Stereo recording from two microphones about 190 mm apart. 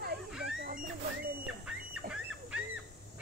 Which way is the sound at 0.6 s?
45° right (ahead or behind).